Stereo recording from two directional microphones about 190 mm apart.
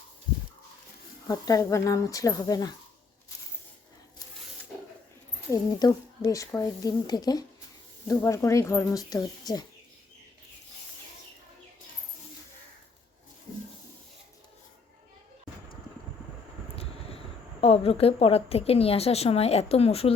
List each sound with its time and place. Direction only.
1.3 s speech: 20° left (ahead or behind)
5.5 s speech: 15° left (ahead or behind)
16.7 s vehicle: 30° left (ahead or behind)
17.6 s a woman's voice: 30° left (ahead or behind)